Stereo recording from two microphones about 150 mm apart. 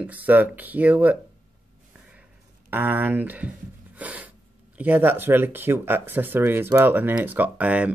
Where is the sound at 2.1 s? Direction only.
10° right (ahead or behind).